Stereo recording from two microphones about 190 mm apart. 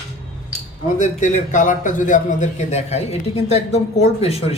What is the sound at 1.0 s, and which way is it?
A man's voice, 40° left (ahead or behind).